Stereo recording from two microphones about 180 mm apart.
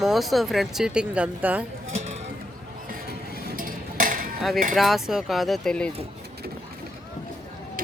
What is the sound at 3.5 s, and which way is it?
Dishes, 50° right (ahead or behind).